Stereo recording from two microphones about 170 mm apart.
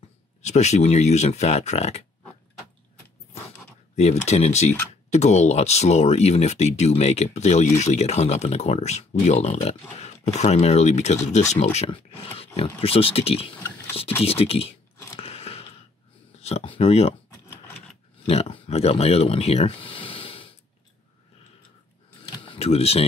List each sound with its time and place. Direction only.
0.4 s speech: 40° left (ahead or behind)
3.9 s speech: 40° left (ahead or behind)
15.1 s chewing: 35° left (ahead or behind)
16.3 s speech: 35° left (ahead or behind)
18.3 s speech: 35° left (ahead or behind)
22.4 s a sound: 35° left (ahead or behind)